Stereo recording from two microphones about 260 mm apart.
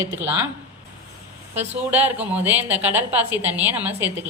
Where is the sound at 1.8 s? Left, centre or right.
Centre.